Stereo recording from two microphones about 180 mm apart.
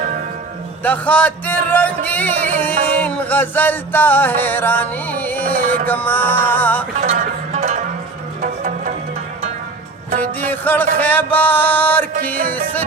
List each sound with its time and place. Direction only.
0.8 s music: 10° left (ahead or behind)
5.5 s music: 50° right (ahead or behind)
5.8 s music: 10° left (ahead or behind)
7.0 s music: 40° right (ahead or behind)
10.2 s music: 10° left (ahead or behind)